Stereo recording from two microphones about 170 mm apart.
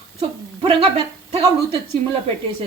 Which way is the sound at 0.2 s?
35° right (ahead or behind).